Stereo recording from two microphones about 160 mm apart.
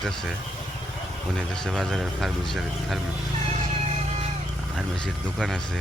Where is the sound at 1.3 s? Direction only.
5° left (ahead or behind).